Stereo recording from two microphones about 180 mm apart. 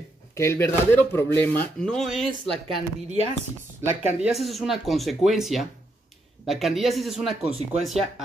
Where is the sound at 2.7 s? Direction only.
35° right (ahead or behind).